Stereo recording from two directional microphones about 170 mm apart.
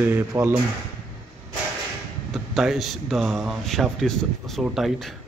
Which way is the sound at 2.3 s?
Centre (ahead or behind).